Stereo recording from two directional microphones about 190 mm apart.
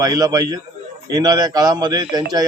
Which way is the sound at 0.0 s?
20° right (ahead or behind).